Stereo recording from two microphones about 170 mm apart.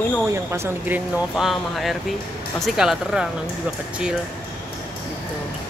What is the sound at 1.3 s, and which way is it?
Speech, centre (ahead or behind).